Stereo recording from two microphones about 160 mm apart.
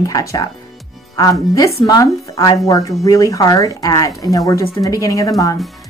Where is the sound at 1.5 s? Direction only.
25° left (ahead or behind).